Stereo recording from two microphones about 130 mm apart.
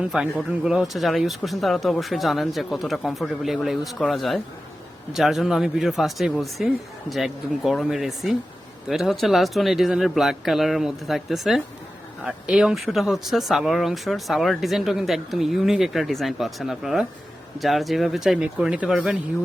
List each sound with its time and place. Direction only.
0.1 s speech: 5° right (ahead or behind)